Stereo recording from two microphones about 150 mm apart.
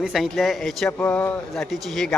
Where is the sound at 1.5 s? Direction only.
Centre (ahead or behind).